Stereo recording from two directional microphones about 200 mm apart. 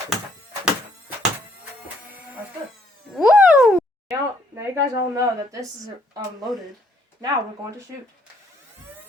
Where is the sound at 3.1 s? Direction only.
5° right (ahead or behind).